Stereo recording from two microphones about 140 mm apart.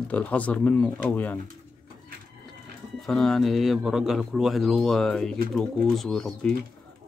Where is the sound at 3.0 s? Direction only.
5° left (ahead or behind).